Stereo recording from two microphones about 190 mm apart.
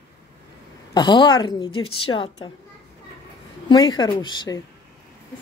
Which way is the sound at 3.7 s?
20° left (ahead or behind).